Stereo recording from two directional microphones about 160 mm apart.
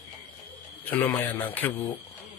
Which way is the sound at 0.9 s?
10° left (ahead or behind).